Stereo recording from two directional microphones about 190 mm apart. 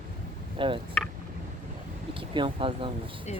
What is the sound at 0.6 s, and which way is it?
Speech, 25° right (ahead or behind).